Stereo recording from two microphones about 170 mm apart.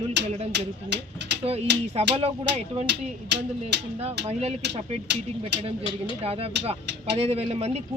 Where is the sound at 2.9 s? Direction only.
90° right.